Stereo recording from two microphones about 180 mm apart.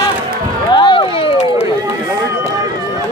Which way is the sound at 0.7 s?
25° left (ahead or behind).